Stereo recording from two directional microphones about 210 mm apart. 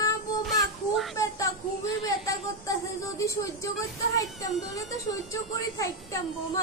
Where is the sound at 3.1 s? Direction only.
15° left (ahead or behind).